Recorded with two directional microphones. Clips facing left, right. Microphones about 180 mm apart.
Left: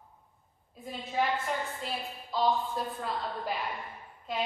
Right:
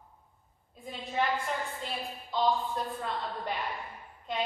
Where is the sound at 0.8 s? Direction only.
Centre (ahead or behind).